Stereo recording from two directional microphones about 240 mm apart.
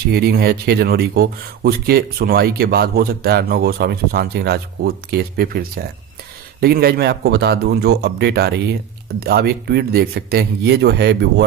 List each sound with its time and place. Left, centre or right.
0.1 s speech: right